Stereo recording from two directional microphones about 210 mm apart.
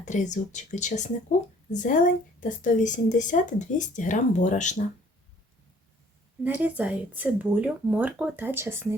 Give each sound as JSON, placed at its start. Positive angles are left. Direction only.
{"t": 0.0, "sound": "speech", "side_deg": 35}
{"t": 6.4, "sound": "speech", "side_deg": -5}